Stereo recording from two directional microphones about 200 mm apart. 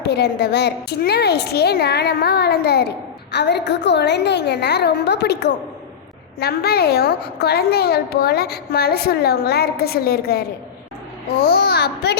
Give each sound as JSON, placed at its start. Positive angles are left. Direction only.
{"t": 0.0, "sound": "a woman's voice", "side_deg": 55}